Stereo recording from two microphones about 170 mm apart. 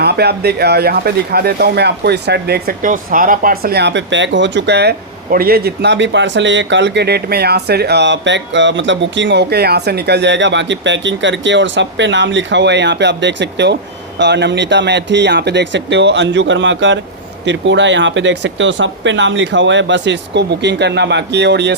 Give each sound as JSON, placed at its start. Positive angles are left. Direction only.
{"t": 0.0, "sound": "speech", "side_deg": -70}